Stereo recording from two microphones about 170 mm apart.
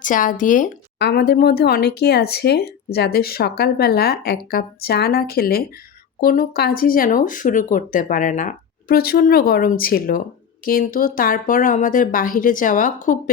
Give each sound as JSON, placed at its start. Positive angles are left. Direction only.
{"t": 0.0, "sound": "speech", "side_deg": 50}
{"t": 0.9, "sound": "speech", "side_deg": 75}